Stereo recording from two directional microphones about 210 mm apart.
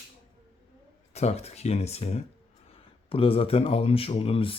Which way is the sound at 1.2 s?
30° left (ahead or behind).